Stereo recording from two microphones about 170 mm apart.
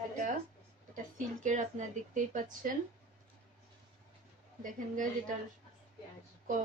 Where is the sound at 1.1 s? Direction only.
45° right (ahead or behind).